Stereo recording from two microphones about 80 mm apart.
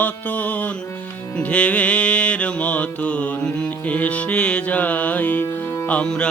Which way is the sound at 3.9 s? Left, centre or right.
Centre.